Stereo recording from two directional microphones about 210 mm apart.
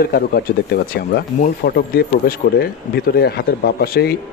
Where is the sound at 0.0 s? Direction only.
45° left (ahead or behind).